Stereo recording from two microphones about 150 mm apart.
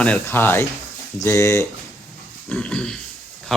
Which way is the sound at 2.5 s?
5° left (ahead or behind).